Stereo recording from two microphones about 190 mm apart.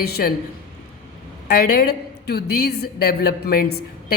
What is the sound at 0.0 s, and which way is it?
Speech, 55° left (ahead or behind).